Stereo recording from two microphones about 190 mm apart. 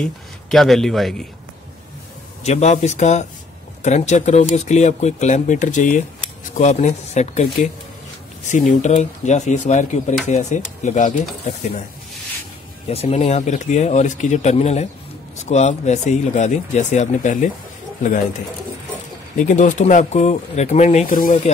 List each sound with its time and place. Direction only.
0.0 s speech: centre (ahead or behind)
2.4 s speech: 35° left (ahead or behind)
12.8 s speech: 30° left (ahead or behind)
19.3 s speech: 40° left (ahead or behind)